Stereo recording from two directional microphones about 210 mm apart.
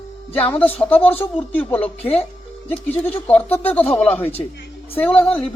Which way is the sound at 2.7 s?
10° left (ahead or behind).